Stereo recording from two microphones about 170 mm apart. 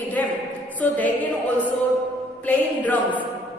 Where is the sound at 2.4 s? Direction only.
10° left (ahead or behind).